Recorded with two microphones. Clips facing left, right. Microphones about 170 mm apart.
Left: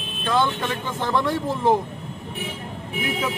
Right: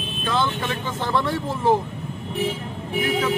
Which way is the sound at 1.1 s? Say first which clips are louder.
Left 1 dB; 15° left (ahead or behind).